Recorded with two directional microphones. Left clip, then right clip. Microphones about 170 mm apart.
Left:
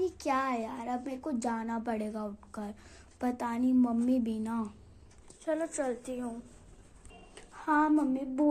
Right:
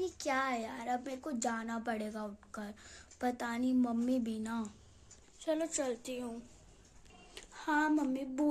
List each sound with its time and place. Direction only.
0.0 s speech: 5° right (ahead or behind)
5.4 s a woman's voice: 25° right (ahead or behind)
6.0 s speech: 10° right (ahead or behind)
7.3 s speech: 20° right (ahead or behind)